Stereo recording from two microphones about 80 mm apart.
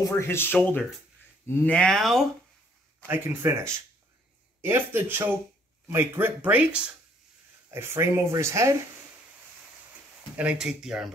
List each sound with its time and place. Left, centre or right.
0.2 s speech: left; by 2.2 s centre
3.1 s speech: right
7.7 s speech: right
10.3 s speech: centre